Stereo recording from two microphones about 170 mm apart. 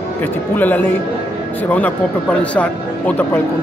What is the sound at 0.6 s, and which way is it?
Speech, 10° left (ahead or behind).